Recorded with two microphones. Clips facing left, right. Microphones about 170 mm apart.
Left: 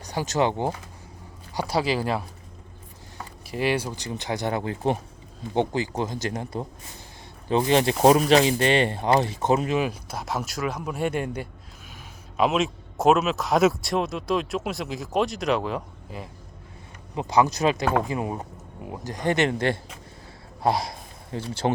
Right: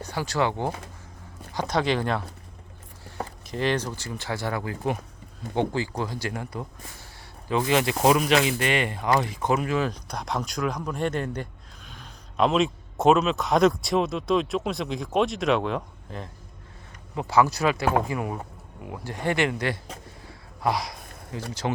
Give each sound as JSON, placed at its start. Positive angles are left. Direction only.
{"t": 0.1, "sound": "speech", "side_deg": 15}
{"t": 1.5, "sound": "speech", "side_deg": 10}
{"t": 3.4, "sound": "a man's voice", "side_deg": 10}
{"t": 17.2, "sound": "a man's voice", "side_deg": 20}